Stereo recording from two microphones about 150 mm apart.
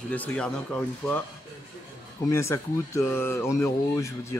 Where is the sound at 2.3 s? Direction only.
20° left (ahead or behind).